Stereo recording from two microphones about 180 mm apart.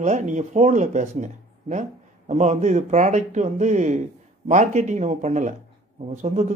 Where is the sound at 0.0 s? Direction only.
40° right (ahead or behind).